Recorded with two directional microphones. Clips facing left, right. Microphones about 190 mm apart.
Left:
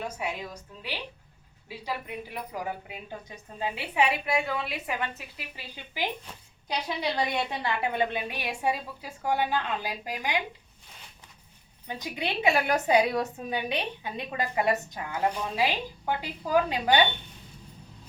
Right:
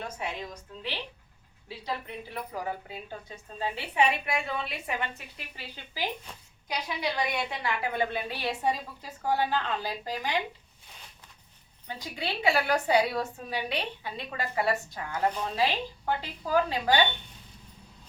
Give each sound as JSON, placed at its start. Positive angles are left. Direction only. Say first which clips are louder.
{"t": 1.8, "sound": "a woman's voice", "louder": "left 1 dB", "side_deg": 10}
{"t": 3.9, "sound": "a woman's voice", "louder": "left 1 dB", "side_deg": 5}
{"t": 6.7, "sound": "a woman's voice", "louder": "left 2 dB", "side_deg": 30}
{"t": 11.9, "sound": "a woman's voice", "louder": "left 2 dB", "side_deg": 20}